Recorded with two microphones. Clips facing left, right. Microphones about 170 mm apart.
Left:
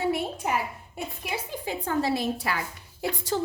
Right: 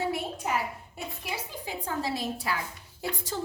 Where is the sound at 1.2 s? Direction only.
60° left (ahead or behind).